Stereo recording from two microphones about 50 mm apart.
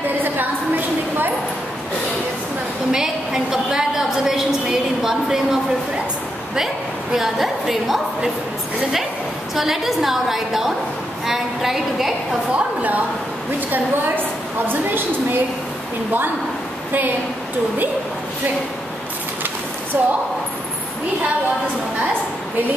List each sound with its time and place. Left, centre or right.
0.2 s a sound: right
2.9 s a sound: centre
6.5 s a woman's voice: centre
9.6 s a woman's voice: centre
12.5 s a woman's voice: right
19.9 s a woman's voice: right